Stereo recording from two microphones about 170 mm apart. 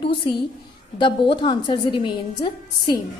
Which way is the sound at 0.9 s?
30° left (ahead or behind).